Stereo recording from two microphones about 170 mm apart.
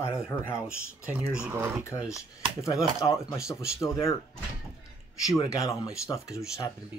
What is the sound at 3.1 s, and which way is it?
Speech, 20° left (ahead or behind).